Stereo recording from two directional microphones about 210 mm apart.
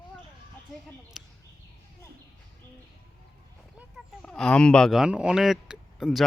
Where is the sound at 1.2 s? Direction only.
Centre (ahead or behind).